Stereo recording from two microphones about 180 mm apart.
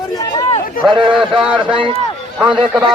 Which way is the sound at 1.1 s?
5° right (ahead or behind).